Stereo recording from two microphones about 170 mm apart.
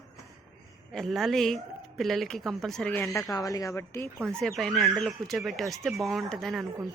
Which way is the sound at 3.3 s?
20° left (ahead or behind).